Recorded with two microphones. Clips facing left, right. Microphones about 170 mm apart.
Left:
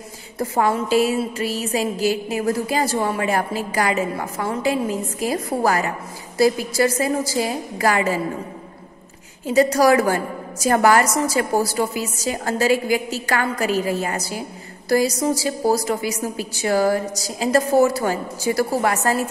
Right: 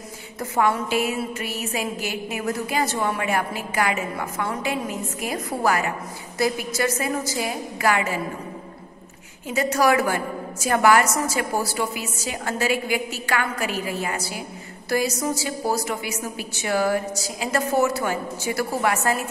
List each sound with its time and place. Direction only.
0.4 s a woman's voice: 35° left (ahead or behind)
9.5 s a woman's voice: 35° left (ahead or behind)